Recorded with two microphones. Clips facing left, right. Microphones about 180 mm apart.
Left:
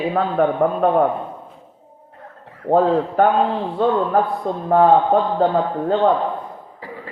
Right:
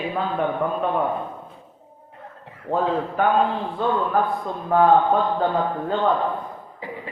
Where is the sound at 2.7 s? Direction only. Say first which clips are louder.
Left 7 dB; 40° left (ahead or behind).